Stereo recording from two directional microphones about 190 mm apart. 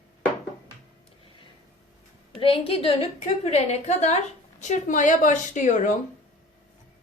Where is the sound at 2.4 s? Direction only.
30° left (ahead or behind).